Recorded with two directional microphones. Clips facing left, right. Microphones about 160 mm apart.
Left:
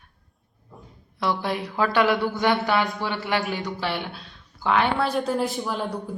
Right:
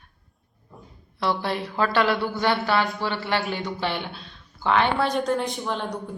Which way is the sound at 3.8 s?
5° left (ahead or behind).